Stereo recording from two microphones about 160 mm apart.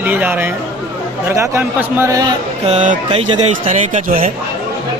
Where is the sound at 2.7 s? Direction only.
50° right (ahead or behind).